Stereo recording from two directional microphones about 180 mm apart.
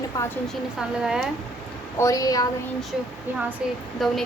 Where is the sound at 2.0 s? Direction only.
20° left (ahead or behind).